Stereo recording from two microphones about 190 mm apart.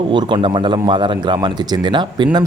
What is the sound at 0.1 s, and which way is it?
Speech, 25° right (ahead or behind).